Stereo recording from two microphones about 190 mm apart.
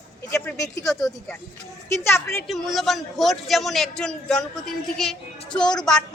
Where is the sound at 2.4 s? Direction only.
Centre (ahead or behind).